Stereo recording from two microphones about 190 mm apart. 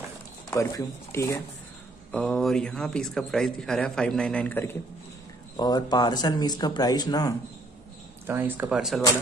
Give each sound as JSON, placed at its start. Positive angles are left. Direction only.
{"t": 0.5, "sound": "speech", "side_deg": 15}
{"t": 2.1, "sound": "a man's voice", "side_deg": 5}
{"t": 5.6, "sound": "speech", "side_deg": 20}
{"t": 8.3, "sound": "speech", "side_deg": -10}